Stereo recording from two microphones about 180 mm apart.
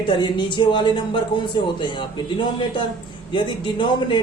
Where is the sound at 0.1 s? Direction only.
25° left (ahead or behind).